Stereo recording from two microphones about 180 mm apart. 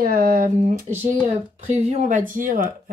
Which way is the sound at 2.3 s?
50° right (ahead or behind).